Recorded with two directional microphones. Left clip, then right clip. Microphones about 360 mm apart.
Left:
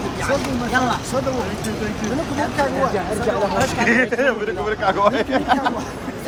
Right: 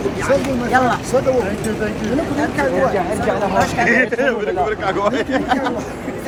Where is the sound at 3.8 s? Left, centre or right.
Left.